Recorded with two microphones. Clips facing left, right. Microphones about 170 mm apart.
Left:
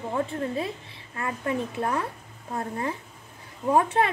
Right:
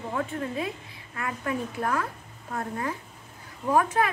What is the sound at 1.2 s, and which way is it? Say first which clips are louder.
A woman's voice: left 2 dB; 30° left (ahead or behind).